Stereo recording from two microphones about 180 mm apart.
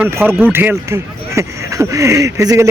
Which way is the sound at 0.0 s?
10° right (ahead or behind).